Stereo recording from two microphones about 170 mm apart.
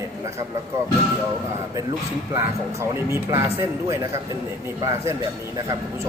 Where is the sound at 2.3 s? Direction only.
15° right (ahead or behind).